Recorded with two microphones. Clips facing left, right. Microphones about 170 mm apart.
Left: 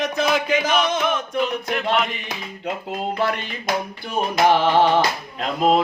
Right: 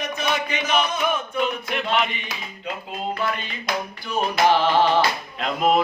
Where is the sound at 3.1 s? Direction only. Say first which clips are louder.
Left 4 dB; 75° left (ahead or behind).